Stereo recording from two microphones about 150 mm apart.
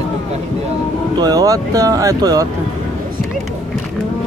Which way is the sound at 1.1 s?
25° right (ahead or behind).